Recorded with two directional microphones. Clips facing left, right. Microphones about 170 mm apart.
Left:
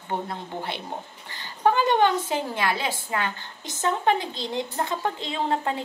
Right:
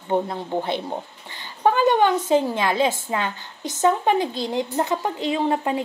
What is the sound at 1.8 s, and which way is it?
A woman's voice, 15° right (ahead or behind).